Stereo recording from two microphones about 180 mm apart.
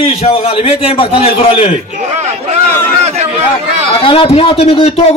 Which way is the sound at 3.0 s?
35° right (ahead or behind).